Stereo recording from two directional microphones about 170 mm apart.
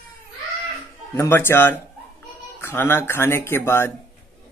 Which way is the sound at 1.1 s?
15° left (ahead or behind).